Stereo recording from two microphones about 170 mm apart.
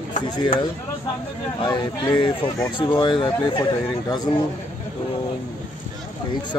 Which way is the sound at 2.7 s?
30° left (ahead or behind).